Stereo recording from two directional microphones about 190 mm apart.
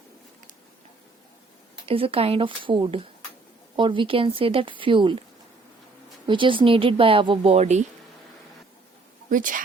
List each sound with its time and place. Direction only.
1.9 s speech: 30° right (ahead or behind)
6.2 s speech: 25° right (ahead or behind)
9.3 s speech: 45° right (ahead or behind)